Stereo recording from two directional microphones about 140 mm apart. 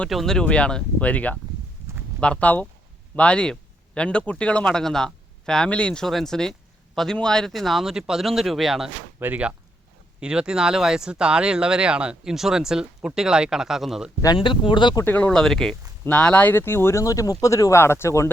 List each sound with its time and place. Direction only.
0.0 s speech: centre (ahead or behind)
9.2 s speech: 10° right (ahead or behind)
14.3 s speech: 35° left (ahead or behind)
15.0 s speech: 10° left (ahead or behind)